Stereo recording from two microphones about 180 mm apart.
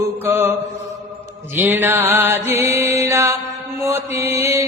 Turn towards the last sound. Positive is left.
turn(degrees=-15)  # may be behind; listen again after turning